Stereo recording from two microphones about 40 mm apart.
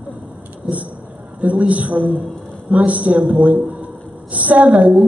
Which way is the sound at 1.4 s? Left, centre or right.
Right.